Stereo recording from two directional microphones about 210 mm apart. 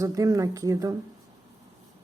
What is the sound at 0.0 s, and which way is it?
Speech, 15° right (ahead or behind).